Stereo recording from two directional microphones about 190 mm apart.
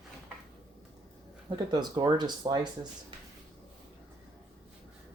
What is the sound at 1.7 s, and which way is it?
Speech, 20° right (ahead or behind).